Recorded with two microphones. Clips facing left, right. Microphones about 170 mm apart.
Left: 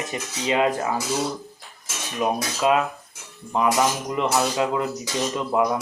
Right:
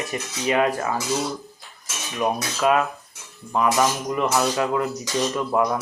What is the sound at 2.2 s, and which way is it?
Speech, 20° left (ahead or behind).